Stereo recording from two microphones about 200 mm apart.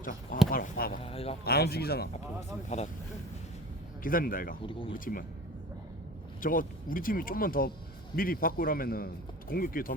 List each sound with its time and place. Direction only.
0.0 s a man's voice: 45° left (ahead or behind)
1.0 s speech: 30° left (ahead or behind)
1.5 s a man's voice: 50° left (ahead or behind)
2.2 s speech: 35° left (ahead or behind)
4.0 s a man's voice: 45° left (ahead or behind)
4.6 s speech: 25° left (ahead or behind)
4.9 s a man's voice: 45° left (ahead or behind)
6.4 s a man's voice: 45° left (ahead or behind)